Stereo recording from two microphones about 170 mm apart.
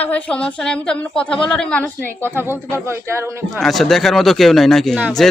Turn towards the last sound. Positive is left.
turn(degrees=0)  # may be behind; listen again after turning